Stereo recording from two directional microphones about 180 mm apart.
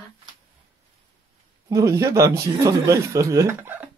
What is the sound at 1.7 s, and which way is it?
Speech, 15° right (ahead or behind).